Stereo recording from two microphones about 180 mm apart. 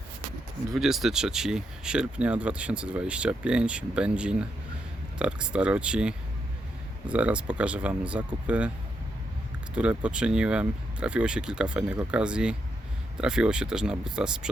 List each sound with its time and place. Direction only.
0.7 s speech: centre (ahead or behind)
9.7 s speech: 5° right (ahead or behind)